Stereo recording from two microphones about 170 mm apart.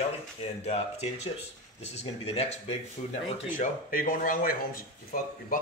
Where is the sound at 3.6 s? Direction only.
55° left (ahead or behind).